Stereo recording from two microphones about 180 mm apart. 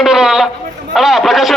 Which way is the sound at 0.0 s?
5° right (ahead or behind).